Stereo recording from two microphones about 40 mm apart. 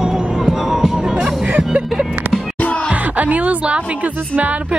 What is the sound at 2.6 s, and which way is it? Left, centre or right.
Music, left.